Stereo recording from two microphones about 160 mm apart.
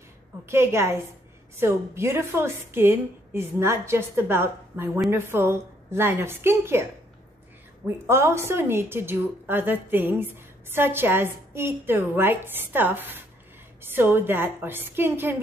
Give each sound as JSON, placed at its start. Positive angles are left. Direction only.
{"t": 0.5, "sound": "a woman's voice", "side_deg": -15}